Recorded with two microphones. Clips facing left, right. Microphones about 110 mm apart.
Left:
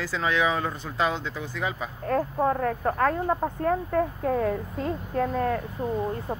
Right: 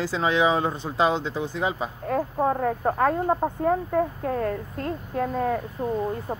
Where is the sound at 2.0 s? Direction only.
5° right (ahead or behind).